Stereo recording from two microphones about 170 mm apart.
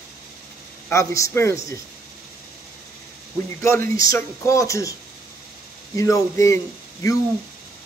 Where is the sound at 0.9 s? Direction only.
20° left (ahead or behind).